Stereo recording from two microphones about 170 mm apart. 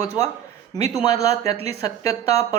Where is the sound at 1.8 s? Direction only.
20° left (ahead or behind).